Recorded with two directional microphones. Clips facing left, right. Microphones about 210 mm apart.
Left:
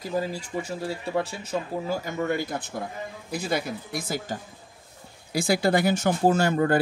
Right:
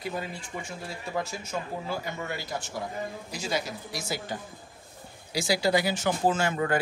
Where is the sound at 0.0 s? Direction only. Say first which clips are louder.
Left 6 dB; 40° left (ahead or behind).